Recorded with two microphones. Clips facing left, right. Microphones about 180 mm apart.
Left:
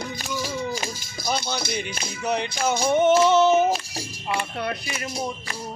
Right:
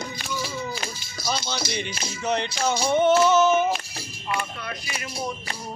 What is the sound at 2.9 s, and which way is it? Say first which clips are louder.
Music: left 1 dB; 20° left (ahead or behind).